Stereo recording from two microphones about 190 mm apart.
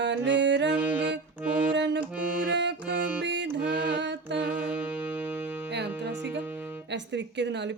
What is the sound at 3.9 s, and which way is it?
Mantra, 65° right (ahead or behind).